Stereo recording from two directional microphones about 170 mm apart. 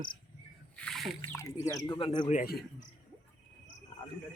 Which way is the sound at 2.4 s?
65° left (ahead or behind).